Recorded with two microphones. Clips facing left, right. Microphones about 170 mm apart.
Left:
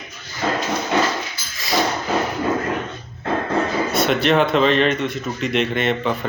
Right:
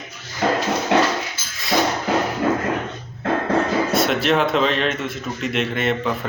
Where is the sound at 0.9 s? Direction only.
75° right (ahead or behind).